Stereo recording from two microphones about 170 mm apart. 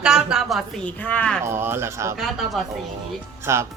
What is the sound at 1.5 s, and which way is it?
Speech, 15° right (ahead or behind).